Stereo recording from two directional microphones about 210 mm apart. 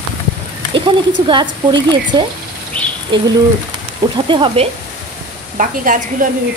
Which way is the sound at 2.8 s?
5° left (ahead or behind).